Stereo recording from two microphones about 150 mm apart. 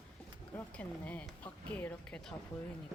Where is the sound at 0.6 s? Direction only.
10° left (ahead or behind).